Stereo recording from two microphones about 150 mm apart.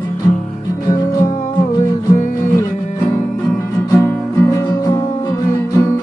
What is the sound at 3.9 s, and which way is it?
Music, 20° left (ahead or behind).